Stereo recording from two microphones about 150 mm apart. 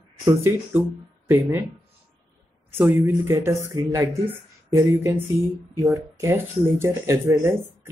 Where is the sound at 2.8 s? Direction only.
15° right (ahead or behind).